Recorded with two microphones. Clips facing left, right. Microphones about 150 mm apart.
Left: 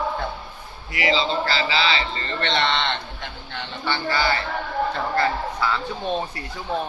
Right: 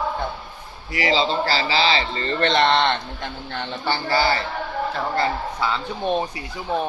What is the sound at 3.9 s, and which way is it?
Speech, 35° right (ahead or behind).